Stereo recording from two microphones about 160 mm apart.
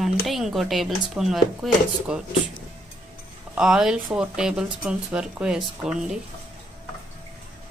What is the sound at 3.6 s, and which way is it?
A woman's voice, 5° right (ahead or behind).